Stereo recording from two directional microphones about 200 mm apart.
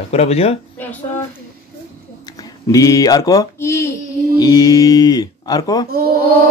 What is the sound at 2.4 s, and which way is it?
Speech, 15° left (ahead or behind).